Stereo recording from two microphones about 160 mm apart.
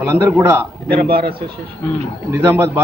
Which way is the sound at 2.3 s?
15° right (ahead or behind).